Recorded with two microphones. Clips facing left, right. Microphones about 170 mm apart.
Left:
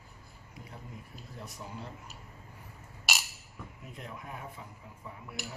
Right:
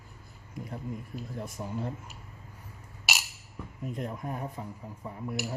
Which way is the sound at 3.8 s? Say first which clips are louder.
Right 11 dB; 45° right (ahead or behind).